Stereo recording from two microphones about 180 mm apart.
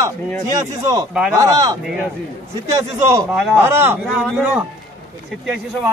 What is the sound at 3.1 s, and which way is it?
A man's voice, 15° right (ahead or behind).